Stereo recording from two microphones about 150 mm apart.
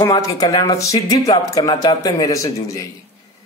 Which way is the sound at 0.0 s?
25° left (ahead or behind).